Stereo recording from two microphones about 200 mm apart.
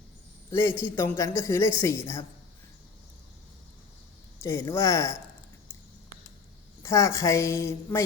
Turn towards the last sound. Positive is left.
turn(degrees=15)  # may be behind; listen again after turning